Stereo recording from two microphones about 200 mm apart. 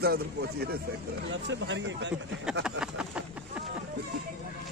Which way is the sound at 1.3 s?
65° right (ahead or behind).